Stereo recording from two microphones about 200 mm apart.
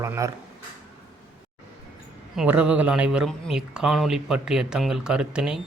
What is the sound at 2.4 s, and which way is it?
Speech, 5° right (ahead or behind).